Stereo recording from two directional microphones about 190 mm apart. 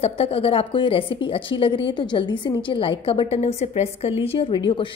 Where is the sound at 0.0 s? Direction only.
30° left (ahead or behind).